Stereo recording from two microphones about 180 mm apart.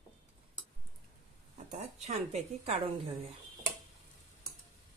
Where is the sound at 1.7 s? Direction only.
40° right (ahead or behind).